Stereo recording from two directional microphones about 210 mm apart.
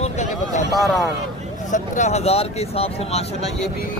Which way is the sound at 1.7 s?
35° left (ahead or behind).